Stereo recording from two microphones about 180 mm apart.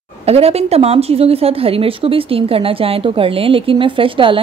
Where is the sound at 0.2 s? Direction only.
35° right (ahead or behind).